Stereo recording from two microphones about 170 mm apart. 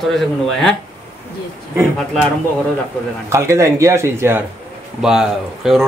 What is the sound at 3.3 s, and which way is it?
Speech, 15° right (ahead or behind).